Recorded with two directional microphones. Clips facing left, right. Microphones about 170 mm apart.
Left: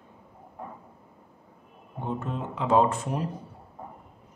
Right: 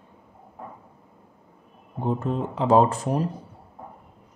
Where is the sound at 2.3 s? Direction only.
35° right (ahead or behind).